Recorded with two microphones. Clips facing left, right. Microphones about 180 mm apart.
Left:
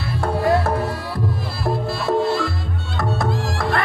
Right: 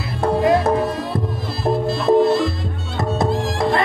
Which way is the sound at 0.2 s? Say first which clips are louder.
Right 3 dB; 20° right (ahead or behind).